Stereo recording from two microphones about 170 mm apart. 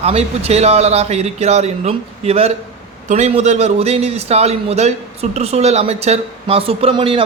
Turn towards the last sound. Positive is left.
turn(degrees=-30)  # may be behind; listen again after turning